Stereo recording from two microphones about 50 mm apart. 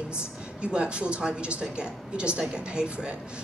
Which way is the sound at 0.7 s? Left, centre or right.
Right.